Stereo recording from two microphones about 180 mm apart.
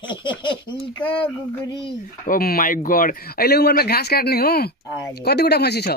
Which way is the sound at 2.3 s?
55° left (ahead or behind).